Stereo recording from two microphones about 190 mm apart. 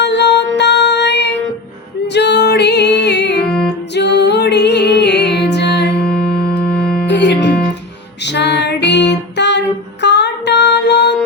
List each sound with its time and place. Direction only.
0.0 s music: 65° left (ahead or behind)
6.1 s music: 5° left (ahead or behind)
7.1 s music: 65° left (ahead or behind)